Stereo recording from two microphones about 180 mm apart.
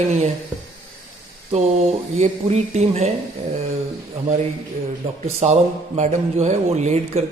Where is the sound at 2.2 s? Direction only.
40° right (ahead or behind).